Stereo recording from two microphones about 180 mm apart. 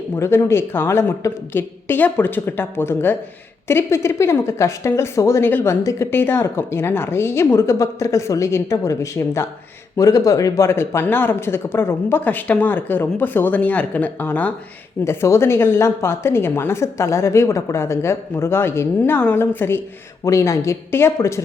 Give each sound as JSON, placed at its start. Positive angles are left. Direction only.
{"t": 0.2, "sound": "a woman's voice", "side_deg": 15}